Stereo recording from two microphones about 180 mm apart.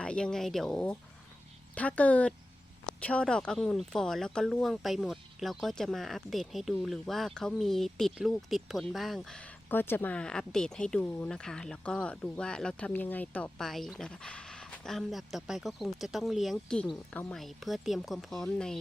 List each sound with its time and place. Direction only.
0.0 s speech: 5° left (ahead or behind)